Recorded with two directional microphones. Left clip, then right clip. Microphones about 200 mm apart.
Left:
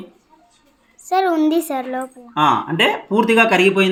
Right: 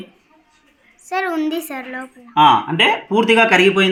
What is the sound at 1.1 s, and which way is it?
Speech, 45° left (ahead or behind).